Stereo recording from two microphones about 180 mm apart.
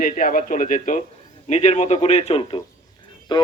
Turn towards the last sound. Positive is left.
turn(degrees=25)  # may be behind; listen again after turning